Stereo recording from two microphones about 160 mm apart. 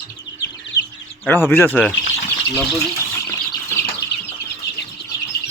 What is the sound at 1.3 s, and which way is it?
Speech, 10° left (ahead or behind).